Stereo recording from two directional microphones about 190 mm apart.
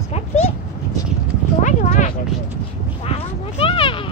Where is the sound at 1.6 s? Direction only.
40° left (ahead or behind).